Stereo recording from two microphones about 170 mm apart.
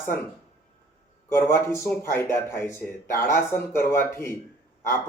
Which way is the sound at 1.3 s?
15° left (ahead or behind).